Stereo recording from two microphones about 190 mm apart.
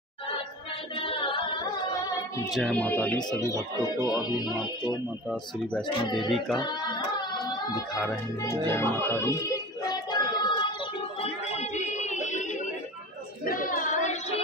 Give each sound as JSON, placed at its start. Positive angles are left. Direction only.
{"t": 0.9, "sound": "music", "side_deg": 30}
{"t": 2.5, "sound": "speech", "side_deg": 5}
{"t": 6.3, "sound": "singing", "side_deg": 0}
{"t": 6.6, "sound": "speech", "side_deg": 20}
{"t": 8.7, "sound": "child singing", "side_deg": 15}
{"t": 11.1, "sound": "music", "side_deg": 35}
{"t": 13.5, "sound": "a sound", "side_deg": 45}